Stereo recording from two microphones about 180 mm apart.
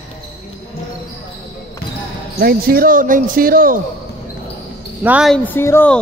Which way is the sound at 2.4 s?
55° right (ahead or behind).